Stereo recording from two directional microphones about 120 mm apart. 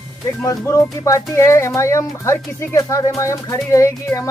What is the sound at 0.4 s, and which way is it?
Music, 25° left (ahead or behind).